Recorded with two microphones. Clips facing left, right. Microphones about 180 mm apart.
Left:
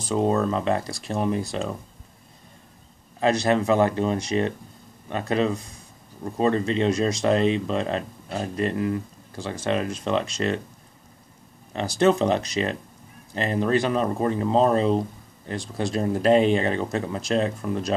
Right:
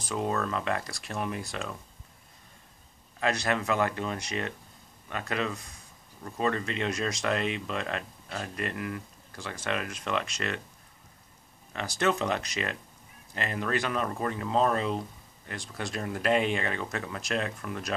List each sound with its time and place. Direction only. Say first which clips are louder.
0.0 s speech: left 8 dB; 30° left (ahead or behind)
3.2 s speech: left 8 dB; 30° left (ahead or behind)
11.7 s speech: left 8 dB; 30° left (ahead or behind)